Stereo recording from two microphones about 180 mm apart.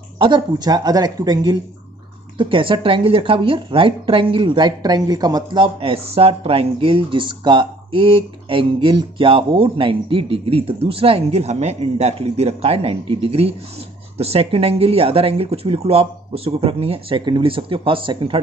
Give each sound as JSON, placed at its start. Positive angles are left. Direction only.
{"t": 0.2, "sound": "a woman's voice", "side_deg": -25}